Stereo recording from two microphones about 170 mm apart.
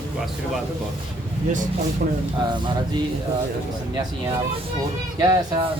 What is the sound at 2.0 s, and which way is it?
Speech, 60° right (ahead or behind).